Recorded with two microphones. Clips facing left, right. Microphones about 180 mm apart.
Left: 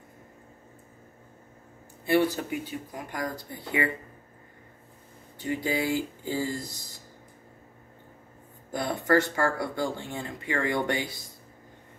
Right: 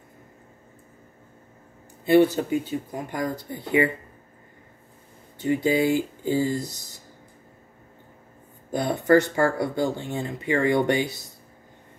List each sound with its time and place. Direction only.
2.0 s speech: 20° right (ahead or behind)
5.4 s speech: 25° right (ahead or behind)
8.7 s speech: 20° right (ahead or behind)